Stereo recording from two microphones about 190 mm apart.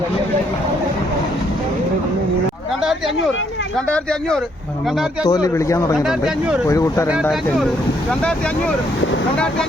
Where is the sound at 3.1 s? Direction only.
85° left.